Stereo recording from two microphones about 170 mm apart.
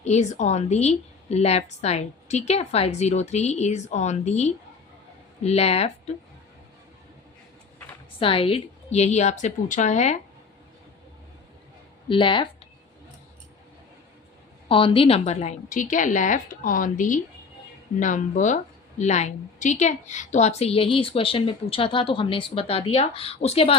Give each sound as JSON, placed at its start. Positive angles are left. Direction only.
{"t": 0.0, "sound": "a woman's voice", "side_deg": 40}
{"t": 8.2, "sound": "a woman's voice", "side_deg": 30}
{"t": 12.0, "sound": "speech", "side_deg": 30}
{"t": 14.7, "sound": "a woman's voice", "side_deg": 30}